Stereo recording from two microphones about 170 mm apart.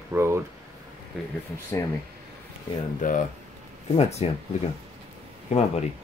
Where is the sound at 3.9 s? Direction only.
35° left (ahead or behind).